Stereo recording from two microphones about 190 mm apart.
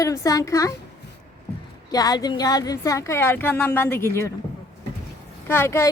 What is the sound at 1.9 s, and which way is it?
Speech, 20° left (ahead or behind).